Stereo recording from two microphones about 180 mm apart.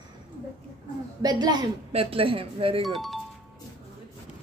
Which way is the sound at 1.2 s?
25° right (ahead or behind).